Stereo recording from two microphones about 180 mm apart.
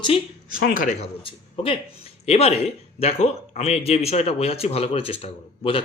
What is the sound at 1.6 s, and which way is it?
A man's voice, 30° left (ahead or behind).